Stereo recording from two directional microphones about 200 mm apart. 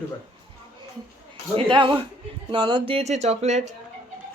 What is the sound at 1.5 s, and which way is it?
Speech, 25° right (ahead or behind).